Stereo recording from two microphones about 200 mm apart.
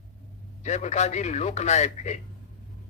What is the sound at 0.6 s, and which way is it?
Speech, 35° left (ahead or behind).